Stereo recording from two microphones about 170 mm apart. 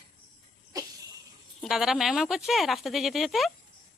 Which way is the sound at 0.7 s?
20° right (ahead or behind).